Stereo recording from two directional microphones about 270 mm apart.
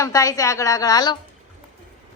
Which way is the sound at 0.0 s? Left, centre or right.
Centre.